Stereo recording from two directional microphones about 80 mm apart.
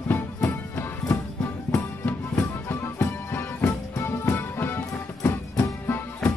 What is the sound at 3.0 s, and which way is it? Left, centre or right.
Music, left.